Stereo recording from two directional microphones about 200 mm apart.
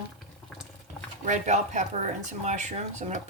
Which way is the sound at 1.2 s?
35° right (ahead or behind).